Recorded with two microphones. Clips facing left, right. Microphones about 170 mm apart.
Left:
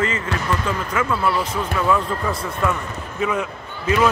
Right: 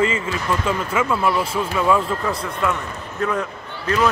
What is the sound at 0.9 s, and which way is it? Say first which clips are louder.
Speech: right 1 dB; 10° right (ahead or behind).